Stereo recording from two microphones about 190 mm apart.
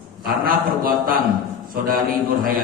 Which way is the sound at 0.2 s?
50° right (ahead or behind).